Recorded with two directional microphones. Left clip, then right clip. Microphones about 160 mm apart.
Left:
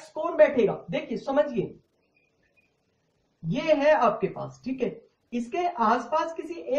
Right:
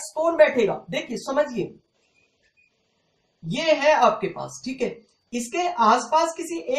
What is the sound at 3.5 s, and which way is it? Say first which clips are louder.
A man's voice: right 2 dB; 15° left (ahead or behind).